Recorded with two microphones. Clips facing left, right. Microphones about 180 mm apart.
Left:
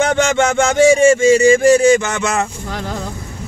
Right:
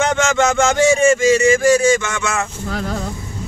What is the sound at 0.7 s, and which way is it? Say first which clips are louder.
Speech: left 6 dB; 30° left (ahead or behind).